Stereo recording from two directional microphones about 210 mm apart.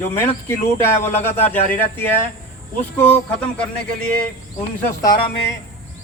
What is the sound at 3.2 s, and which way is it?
Speech, 5° left (ahead or behind).